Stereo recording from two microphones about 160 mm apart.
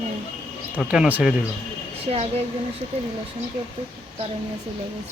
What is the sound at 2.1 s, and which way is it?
Speech, 40° right (ahead or behind).